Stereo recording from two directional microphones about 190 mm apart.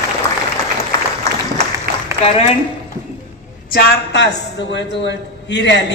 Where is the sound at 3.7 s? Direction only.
55° left (ahead or behind).